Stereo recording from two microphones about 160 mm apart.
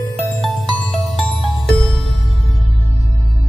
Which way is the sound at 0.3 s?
Centre (ahead or behind).